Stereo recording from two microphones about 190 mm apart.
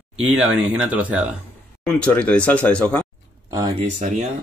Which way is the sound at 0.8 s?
5° right (ahead or behind).